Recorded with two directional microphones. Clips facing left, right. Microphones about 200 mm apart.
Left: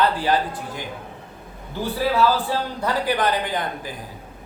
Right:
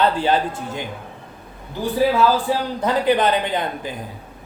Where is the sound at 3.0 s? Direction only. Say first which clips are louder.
Right 5 dB; 25° right (ahead or behind).